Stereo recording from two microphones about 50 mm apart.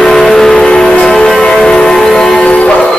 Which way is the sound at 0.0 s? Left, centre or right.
Centre.